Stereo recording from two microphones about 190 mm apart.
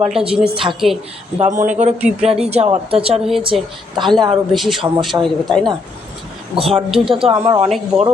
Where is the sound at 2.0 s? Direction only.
5° right (ahead or behind).